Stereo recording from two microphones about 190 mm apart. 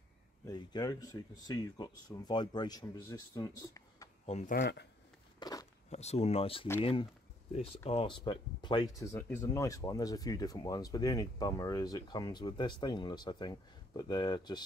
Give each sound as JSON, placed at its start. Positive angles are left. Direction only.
{"t": 0.5, "sound": "speech", "side_deg": 20}
{"t": 4.3, "sound": "speech", "side_deg": 40}
{"t": 4.6, "sound": "speech", "side_deg": 60}
{"t": 5.4, "sound": "a sound", "side_deg": 20}
{"t": 5.9, "sound": "speech", "side_deg": 35}